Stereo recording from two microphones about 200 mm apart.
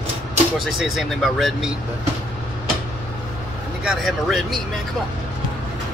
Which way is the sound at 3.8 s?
Centre (ahead or behind).